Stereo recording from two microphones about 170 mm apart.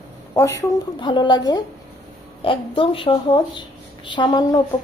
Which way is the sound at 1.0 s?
25° left (ahead or behind).